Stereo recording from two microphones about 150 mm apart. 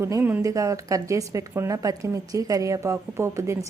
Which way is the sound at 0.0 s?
15° right (ahead or behind).